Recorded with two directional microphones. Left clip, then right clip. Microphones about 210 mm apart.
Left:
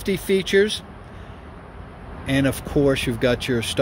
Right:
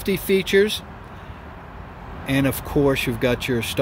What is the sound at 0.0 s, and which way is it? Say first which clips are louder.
Speech: right 1 dB; 10° right (ahead or behind).